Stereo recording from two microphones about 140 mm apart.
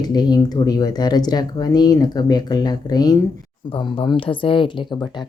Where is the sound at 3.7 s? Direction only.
40° left (ahead or behind).